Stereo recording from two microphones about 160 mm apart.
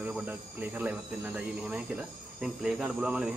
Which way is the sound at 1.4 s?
5° right (ahead or behind).